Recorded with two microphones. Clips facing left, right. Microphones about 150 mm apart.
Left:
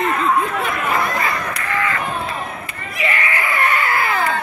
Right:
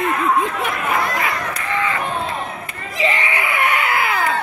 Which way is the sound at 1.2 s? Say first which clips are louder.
Even; 15° right (ahead or behind).